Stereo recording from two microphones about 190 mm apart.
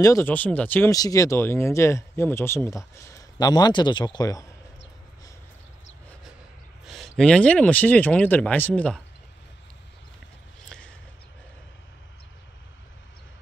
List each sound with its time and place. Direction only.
0.0 s speech: 15° left (ahead or behind)
6.9 s speech: centre (ahead or behind)